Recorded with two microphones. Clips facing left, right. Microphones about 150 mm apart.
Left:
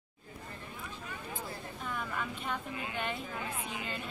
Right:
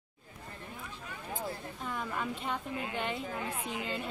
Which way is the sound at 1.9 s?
25° right (ahead or behind).